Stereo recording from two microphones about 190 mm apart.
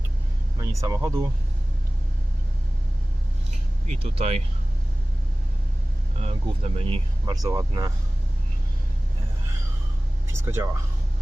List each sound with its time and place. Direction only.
0.6 s speech: 15° right (ahead or behind)
3.8 s speech: 35° right (ahead or behind)
6.2 s speech: 35° right (ahead or behind)
10.2 s speech: 15° right (ahead or behind)